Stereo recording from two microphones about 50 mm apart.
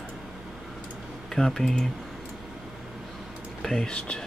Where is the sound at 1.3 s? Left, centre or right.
Centre.